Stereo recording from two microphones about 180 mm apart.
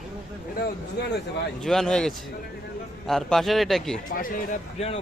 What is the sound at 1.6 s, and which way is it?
Speech, centre (ahead or behind).